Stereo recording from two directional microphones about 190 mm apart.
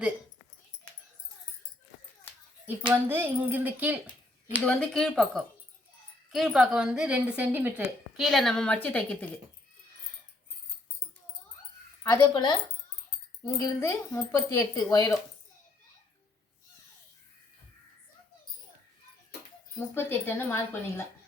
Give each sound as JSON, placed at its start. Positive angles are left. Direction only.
{"t": 2.6, "sound": "speech", "side_deg": -10}
{"t": 4.6, "sound": "a woman's voice", "side_deg": 5}
{"t": 12.0, "sound": "speech", "side_deg": 20}
{"t": 19.9, "sound": "speech", "side_deg": 10}